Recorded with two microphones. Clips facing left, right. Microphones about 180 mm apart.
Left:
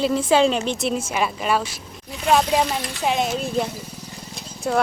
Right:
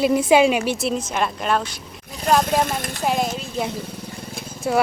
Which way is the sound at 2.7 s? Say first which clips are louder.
Even; 50° right (ahead or behind).